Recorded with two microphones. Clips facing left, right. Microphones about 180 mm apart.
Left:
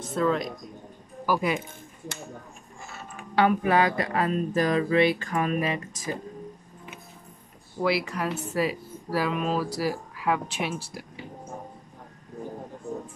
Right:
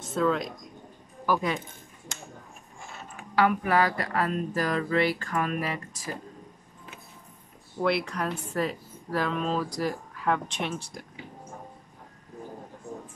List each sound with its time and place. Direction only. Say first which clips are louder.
0.1 s speech: left 1 dB; centre (ahead or behind)
3.3 s a sound: left 2 dB; 25° left (ahead or behind)
7.8 s a woman's voice: left 1 dB; 5° left (ahead or behind)